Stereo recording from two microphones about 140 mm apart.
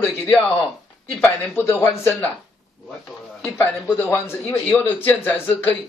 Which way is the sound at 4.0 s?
15° left (ahead or behind).